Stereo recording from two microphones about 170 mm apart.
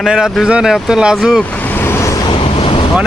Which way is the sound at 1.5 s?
10° left (ahead or behind).